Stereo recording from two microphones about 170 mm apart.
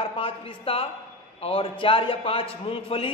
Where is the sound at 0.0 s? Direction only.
35° left (ahead or behind).